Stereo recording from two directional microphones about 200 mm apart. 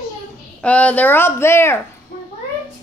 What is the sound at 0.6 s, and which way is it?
A child's voice, 5° left (ahead or behind).